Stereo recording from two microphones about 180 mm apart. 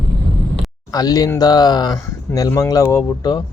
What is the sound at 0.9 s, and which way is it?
Speech, 20° left (ahead or behind).